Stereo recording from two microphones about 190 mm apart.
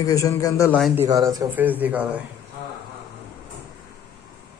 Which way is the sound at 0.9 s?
20° right (ahead or behind).